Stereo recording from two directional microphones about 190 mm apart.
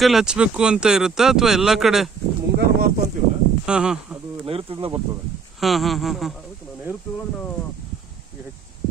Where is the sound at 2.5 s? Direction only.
55° right (ahead or behind).